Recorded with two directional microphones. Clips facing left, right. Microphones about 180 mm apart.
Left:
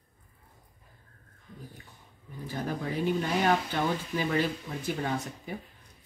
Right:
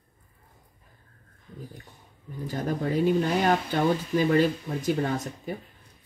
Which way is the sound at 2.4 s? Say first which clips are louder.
Right 5 dB; 45° right (ahead or behind).